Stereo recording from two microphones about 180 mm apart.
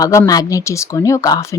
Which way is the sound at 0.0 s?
20° left (ahead or behind).